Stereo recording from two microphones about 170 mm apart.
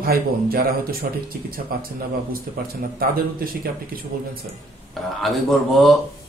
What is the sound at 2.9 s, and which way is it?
Speech, 60° right (ahead or behind).